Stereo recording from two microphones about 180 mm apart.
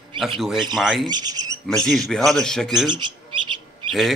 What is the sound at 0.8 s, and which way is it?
Speech, centre (ahead or behind).